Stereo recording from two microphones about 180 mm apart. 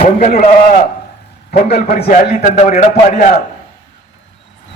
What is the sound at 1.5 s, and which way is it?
Speech, 60° left (ahead or behind).